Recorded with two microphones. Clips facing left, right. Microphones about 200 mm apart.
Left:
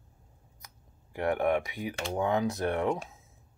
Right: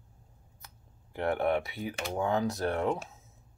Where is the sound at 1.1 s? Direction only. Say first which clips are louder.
Left 1 dB; 15° left (ahead or behind).